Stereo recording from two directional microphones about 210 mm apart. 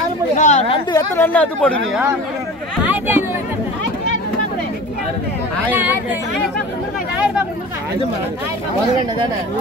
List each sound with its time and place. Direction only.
0.4 s speech: 35° left (ahead or behind)
0.9 s speech: 10° left (ahead or behind)
2.8 s a sound: 10° right (ahead or behind)
5.7 s speech: 10° right (ahead or behind)